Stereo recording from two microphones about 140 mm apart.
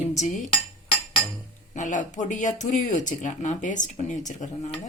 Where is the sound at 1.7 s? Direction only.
65° left (ahead or behind).